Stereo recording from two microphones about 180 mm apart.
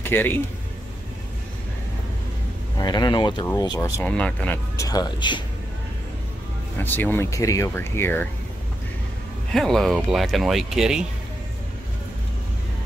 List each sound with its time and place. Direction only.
0.0 s speech: 10° left (ahead or behind)
2.8 s speech: 25° left (ahead or behind)
4.0 s speech: 5° left (ahead or behind)
4.8 s speech: 20° left (ahead or behind)
6.8 s speech: 10° left (ahead or behind)
9.5 s speech: centre (ahead or behind)